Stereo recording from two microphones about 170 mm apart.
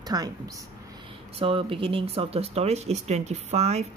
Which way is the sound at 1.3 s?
35° right (ahead or behind).